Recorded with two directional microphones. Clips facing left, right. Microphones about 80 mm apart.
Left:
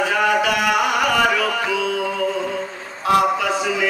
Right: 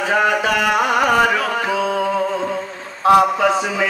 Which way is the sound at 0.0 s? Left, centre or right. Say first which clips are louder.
Right 1 dB; right.